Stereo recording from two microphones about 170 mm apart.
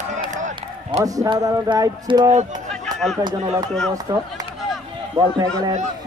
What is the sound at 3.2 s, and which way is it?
A man's voice, 25° right (ahead or behind).